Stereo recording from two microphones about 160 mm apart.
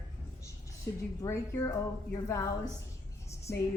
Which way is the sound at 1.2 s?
20° left (ahead or behind).